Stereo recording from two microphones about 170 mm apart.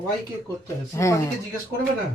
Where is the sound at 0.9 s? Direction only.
20° left (ahead or behind).